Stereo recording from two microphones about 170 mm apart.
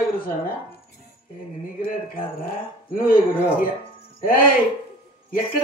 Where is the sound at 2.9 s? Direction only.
55° left (ahead or behind).